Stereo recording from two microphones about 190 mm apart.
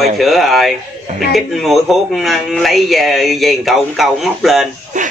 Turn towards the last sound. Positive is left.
turn(degrees=-40)  # may be behind; listen again after turning